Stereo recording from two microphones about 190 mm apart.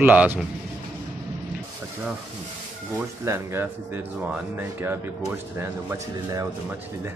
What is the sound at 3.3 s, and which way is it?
Speech, 15° right (ahead or behind).